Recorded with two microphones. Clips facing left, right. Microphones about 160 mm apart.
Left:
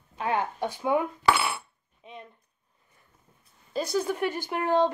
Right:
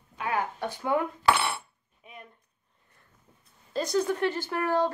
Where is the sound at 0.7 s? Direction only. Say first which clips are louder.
Left 2 dB; 15° left (ahead or behind).